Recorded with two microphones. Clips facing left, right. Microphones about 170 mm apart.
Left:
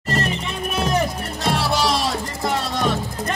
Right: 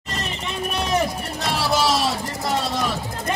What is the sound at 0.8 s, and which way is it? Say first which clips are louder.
Music: even; centre (ahead or behind).